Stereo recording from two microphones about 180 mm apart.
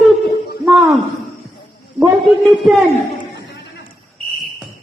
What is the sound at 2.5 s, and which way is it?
Speech, centre (ahead or behind).